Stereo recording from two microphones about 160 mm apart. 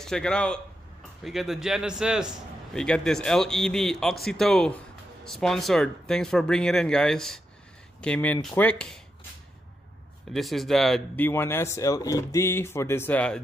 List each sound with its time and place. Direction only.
0.0 s a man's voice: 5° left (ahead or behind)
10.3 s a man's voice: centre (ahead or behind)
11.2 s speech: 15° left (ahead or behind)